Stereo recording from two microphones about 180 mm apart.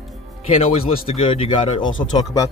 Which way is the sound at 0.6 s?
35° left (ahead or behind).